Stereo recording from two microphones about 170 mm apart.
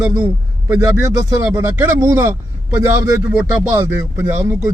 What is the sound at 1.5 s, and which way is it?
A man's voice, 15° right (ahead or behind).